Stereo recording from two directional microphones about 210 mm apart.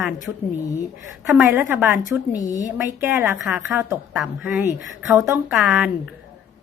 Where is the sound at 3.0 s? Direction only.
5° right (ahead or behind).